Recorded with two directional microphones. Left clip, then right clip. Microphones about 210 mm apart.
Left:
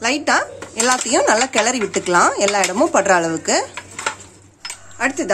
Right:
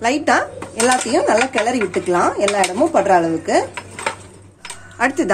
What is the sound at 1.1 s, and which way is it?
Speech, 25° left (ahead or behind).